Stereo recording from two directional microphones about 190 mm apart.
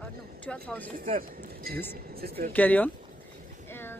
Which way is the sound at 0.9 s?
50° right (ahead or behind).